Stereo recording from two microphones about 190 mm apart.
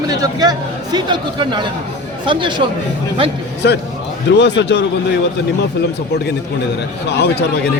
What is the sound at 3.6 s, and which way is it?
A man's voice, 65° left (ahead or behind).